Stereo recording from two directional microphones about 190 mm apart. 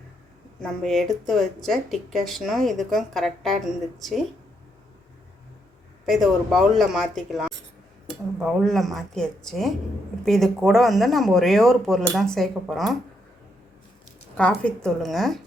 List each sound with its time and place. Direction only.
0.6 s speech: centre (ahead or behind)
6.1 s speech: centre (ahead or behind)
14.3 s speech: 5° left (ahead or behind)